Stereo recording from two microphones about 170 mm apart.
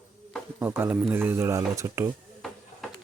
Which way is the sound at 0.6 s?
10° right (ahead or behind).